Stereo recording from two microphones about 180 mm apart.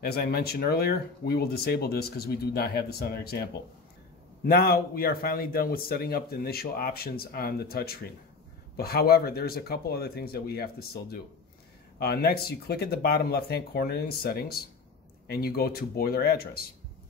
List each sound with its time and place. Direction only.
0.0 s speech: 60° left (ahead or behind)